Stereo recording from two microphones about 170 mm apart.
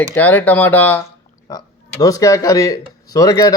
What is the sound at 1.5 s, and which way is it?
Speech, 20° left (ahead or behind).